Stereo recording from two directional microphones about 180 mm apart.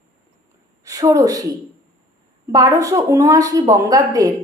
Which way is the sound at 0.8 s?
20° right (ahead or behind).